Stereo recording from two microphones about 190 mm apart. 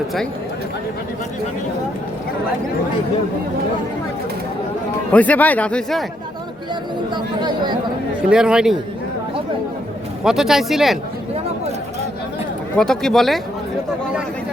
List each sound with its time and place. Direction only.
5.1 s speech: 10° left (ahead or behind)
7.1 s speech: 25° right (ahead or behind)
8.3 s speech: 5° right (ahead or behind)
10.2 s speech: centre (ahead or behind)
12.7 s speech: 5° left (ahead or behind)